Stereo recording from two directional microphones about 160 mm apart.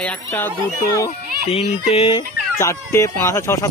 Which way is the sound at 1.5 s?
40° left (ahead or behind).